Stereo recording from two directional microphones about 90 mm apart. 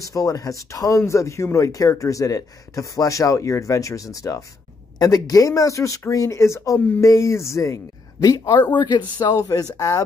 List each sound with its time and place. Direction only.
0.0 s speech: 40° left (ahead or behind)